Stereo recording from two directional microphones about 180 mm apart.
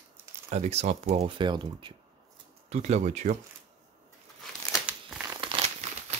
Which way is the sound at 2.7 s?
40° right (ahead or behind).